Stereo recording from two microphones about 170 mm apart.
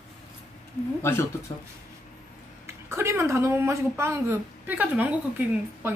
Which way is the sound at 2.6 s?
15° right (ahead or behind).